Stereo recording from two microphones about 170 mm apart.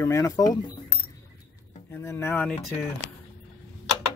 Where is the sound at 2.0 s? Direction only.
15° left (ahead or behind).